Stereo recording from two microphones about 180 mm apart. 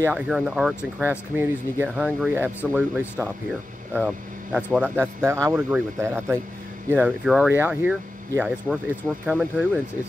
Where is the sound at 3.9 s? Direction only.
5° right (ahead or behind).